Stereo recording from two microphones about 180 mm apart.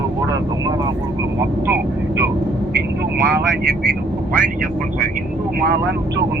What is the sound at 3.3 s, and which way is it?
Speech, 65° right (ahead or behind).